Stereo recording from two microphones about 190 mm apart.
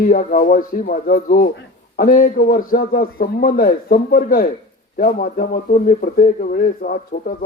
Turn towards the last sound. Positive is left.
turn(degrees=45)  # may be behind; listen again after turning